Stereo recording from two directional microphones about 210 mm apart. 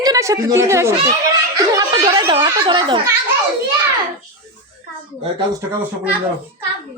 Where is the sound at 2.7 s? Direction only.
25° right (ahead or behind).